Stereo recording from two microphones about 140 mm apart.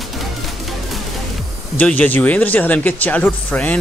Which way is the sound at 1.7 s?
10° left (ahead or behind).